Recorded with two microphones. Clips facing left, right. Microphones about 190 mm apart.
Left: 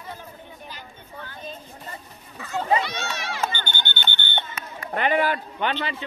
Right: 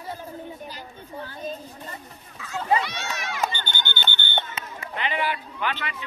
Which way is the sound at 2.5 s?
30° left (ahead or behind).